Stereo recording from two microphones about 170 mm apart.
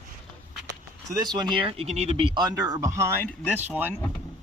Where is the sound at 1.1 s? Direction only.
25° right (ahead or behind).